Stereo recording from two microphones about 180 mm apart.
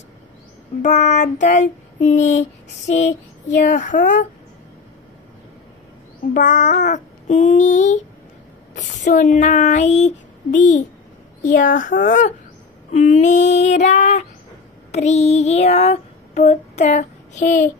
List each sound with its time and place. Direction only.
0.8 s speech: 40° left (ahead or behind)
2.9 s child singing: 40° left (ahead or behind)
6.3 s speech: 45° left (ahead or behind)
11.4 s child singing: 50° left (ahead or behind)
12.9 s speech: 40° left (ahead or behind)
14.9 s child singing: 40° left (ahead or behind)